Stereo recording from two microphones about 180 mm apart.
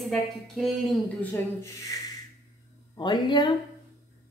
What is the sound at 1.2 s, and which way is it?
Speech, 15° left (ahead or behind).